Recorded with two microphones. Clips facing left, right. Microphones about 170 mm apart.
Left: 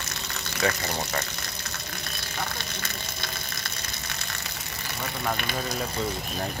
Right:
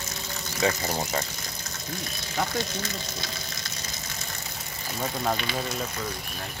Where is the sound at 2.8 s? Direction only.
60° left (ahead or behind).